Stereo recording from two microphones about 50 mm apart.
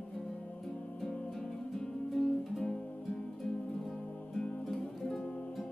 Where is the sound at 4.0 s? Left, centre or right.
Left.